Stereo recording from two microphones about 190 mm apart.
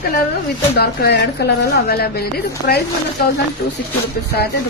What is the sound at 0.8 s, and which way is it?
A woman's voice, 60° left (ahead or behind).